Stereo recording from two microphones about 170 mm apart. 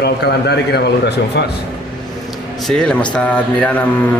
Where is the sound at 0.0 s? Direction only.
75° left (ahead or behind).